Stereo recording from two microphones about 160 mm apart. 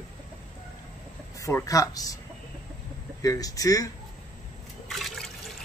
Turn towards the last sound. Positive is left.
turn(degrees=0)  # may be behind; listen again after turning